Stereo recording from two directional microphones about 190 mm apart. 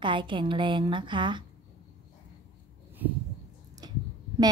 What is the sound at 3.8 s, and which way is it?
Clicking, 20° right (ahead or behind).